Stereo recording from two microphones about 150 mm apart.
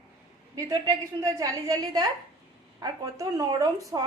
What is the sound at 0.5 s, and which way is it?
A woman's voice, 20° right (ahead or behind).